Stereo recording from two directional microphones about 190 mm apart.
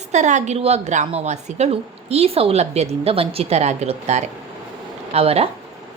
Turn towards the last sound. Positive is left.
turn(degrees=-30)  # may be behind; listen again after turning